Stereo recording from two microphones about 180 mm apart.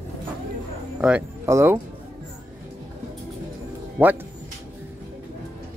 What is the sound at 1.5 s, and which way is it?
Speech, 15° right (ahead or behind).